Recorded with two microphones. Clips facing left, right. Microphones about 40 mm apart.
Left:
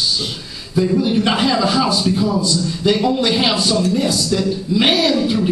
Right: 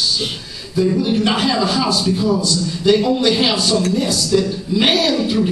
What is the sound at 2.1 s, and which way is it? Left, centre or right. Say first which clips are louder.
A man's voice: even; centre.